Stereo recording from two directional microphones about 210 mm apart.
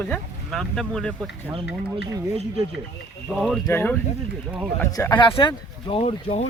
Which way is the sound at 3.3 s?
Centre (ahead or behind).